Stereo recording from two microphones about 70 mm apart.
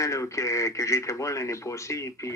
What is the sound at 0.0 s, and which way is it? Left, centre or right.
Speech, left.